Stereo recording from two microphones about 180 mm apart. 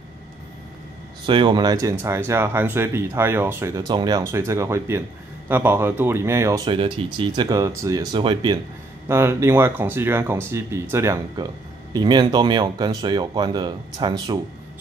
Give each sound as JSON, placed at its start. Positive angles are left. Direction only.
{"t": 1.2, "sound": "speech", "side_deg": -25}
{"t": 6.7, "sound": "speech", "side_deg": -30}
{"t": 9.0, "sound": "speech", "side_deg": -15}